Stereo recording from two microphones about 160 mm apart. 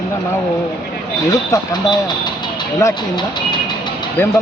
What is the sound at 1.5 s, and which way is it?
Speech, 25° left (ahead or behind).